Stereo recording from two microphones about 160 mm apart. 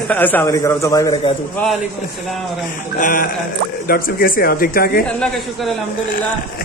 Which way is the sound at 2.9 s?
60° left (ahead or behind).